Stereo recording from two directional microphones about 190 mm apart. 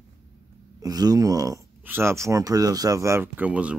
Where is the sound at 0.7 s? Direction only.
20° right (ahead or behind).